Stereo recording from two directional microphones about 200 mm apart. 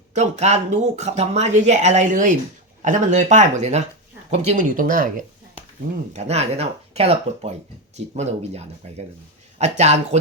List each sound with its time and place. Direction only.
0.1 s speech: 35° right (ahead or behind)